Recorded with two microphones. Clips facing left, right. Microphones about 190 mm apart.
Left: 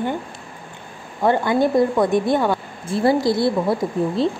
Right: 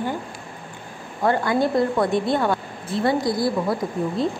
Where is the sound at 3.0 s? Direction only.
25° left (ahead or behind).